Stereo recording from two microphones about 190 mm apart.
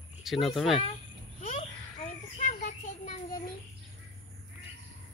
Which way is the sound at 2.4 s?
40° left (ahead or behind).